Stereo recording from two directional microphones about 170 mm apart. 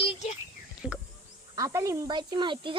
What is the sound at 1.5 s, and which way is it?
Speech, 20° right (ahead or behind).